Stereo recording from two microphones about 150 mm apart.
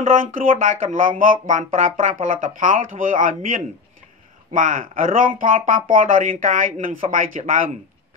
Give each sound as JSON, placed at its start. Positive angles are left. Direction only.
{"t": 0.0, "sound": "speech", "side_deg": -65}